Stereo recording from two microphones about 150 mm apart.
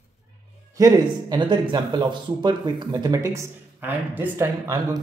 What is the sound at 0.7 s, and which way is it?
Speech, 25° right (ahead or behind).